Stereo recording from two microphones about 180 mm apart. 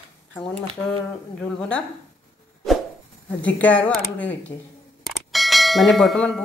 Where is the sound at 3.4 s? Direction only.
10° left (ahead or behind).